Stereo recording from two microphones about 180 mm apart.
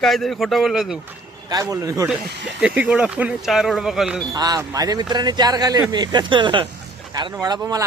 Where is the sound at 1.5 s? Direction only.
20° right (ahead or behind).